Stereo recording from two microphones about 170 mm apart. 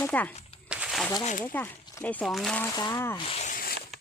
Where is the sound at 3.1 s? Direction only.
35° left (ahead or behind).